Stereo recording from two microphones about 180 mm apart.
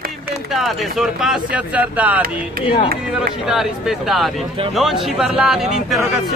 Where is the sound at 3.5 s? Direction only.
Centre (ahead or behind).